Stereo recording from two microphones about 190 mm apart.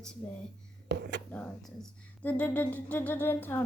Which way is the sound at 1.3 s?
5° left (ahead or behind).